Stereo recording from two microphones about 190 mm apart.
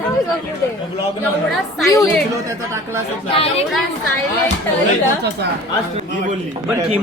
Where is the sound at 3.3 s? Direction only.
30° left (ahead or behind).